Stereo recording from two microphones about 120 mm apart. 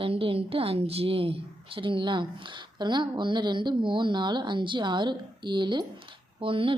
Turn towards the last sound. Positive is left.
turn(degrees=-45)  # may be behind; listen again after turning